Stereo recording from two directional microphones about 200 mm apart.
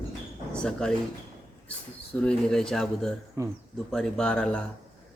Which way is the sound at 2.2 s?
5° left (ahead or behind).